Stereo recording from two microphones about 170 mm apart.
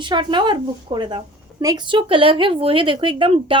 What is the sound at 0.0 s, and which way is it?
A woman's voice, 30° right (ahead or behind).